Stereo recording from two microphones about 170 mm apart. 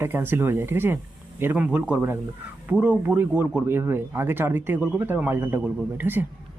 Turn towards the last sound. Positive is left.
turn(degrees=-10)  # may be behind; listen again after turning